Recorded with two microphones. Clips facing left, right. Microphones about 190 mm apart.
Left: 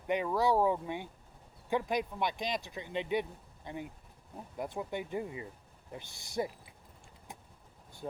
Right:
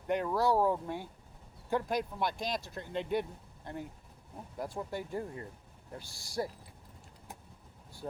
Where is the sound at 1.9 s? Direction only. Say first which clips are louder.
Even; 15° left (ahead or behind).